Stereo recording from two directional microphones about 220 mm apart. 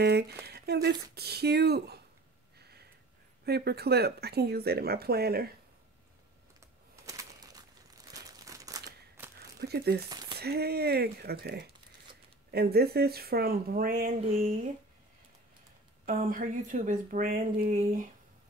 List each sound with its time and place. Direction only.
0.0 s speech: 45° right (ahead or behind)
3.4 s speech: 45° right (ahead or behind)
7.1 s bird: 15° right (ahead or behind)
8.1 s crumpling: 15° right (ahead or behind)
9.6 s speech: 45° right (ahead or behind)
10.0 s speech: 20° right (ahead or behind)
10.4 s speech: 45° right (ahead or behind)
16.1 s speech: 40° right (ahead or behind)